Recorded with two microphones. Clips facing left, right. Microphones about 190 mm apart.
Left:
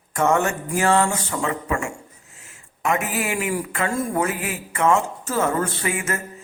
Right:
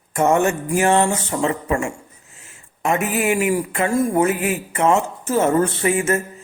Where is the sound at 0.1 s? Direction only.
20° right (ahead or behind).